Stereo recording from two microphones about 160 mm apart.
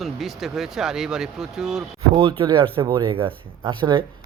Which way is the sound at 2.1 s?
35° right (ahead or behind).